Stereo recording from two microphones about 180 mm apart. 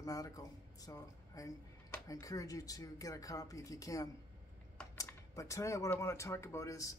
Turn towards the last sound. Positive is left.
turn(degrees=20)  # may be behind; listen again after turning